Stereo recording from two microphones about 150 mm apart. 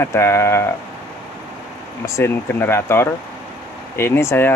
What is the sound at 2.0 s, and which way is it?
Speech, 15° left (ahead or behind).